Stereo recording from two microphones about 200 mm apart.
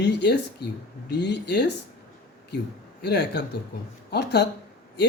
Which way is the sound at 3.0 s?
55° left (ahead or behind).